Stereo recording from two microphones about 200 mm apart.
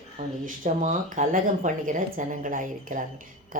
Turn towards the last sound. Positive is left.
turn(degrees=-40)  # may be behind; listen again after turning